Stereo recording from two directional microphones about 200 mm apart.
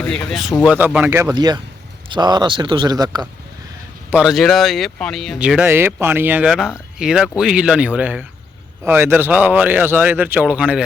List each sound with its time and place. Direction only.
0.0 s a man's voice: 5° left (ahead or behind); by 3.2 s 20° right (ahead or behind)
4.1 s a man's voice: 5° right (ahead or behind)